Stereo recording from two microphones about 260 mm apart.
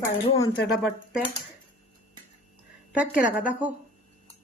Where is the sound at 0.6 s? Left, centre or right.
Left.